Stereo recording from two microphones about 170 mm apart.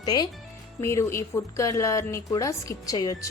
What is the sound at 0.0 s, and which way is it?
A woman's voice, 25° left (ahead or behind).